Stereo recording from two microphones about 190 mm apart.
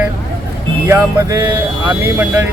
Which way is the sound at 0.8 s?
15° right (ahead or behind).